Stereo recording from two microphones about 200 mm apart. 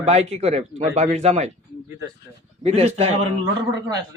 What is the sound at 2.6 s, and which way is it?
Speech, 35° right (ahead or behind).